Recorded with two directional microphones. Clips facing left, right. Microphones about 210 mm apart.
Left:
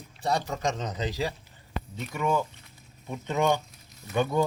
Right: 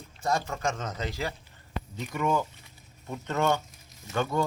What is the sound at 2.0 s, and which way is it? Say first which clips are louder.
Speech: even; 5° left (ahead or behind).